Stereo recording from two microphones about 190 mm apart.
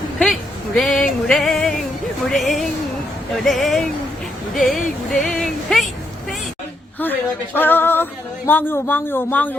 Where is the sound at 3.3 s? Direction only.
Centre (ahead or behind).